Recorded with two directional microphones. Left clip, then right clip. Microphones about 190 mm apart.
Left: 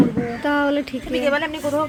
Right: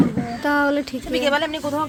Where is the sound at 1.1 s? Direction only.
60° right (ahead or behind).